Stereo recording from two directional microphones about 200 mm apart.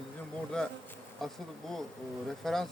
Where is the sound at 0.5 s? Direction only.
5° left (ahead or behind).